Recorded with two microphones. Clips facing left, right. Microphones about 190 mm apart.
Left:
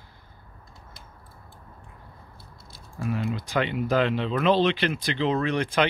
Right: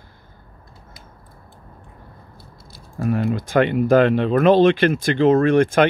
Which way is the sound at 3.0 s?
50° right (ahead or behind).